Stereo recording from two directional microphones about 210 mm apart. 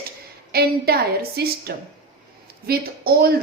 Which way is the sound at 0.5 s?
50° right (ahead or behind).